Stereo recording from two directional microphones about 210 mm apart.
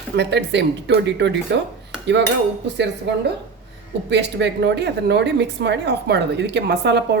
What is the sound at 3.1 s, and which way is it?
Speech, 55° right (ahead or behind).